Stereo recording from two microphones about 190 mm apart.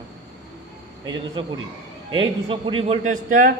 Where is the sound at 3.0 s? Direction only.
45° right (ahead or behind).